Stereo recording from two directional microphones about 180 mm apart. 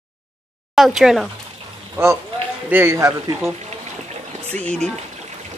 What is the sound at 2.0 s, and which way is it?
Speech, 15° right (ahead or behind).